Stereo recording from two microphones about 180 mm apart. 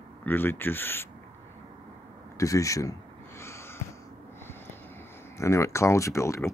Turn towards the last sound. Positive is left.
turn(degrees=15)  # may be behind; listen again after turning